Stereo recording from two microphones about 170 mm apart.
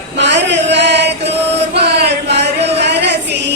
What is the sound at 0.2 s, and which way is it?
Chant, 90° right.